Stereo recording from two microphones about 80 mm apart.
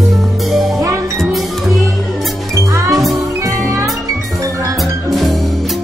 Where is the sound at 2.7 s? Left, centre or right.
Right.